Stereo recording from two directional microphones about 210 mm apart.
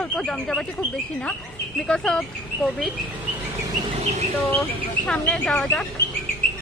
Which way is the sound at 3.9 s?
30° right (ahead or behind).